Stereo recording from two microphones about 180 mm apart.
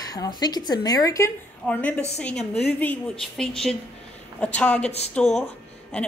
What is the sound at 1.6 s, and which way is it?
A woman's voice, 10° left (ahead or behind).